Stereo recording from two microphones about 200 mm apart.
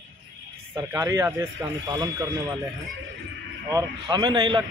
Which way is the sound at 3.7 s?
20° right (ahead or behind).